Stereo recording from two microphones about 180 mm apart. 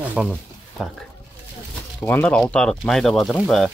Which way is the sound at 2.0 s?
10° left (ahead or behind).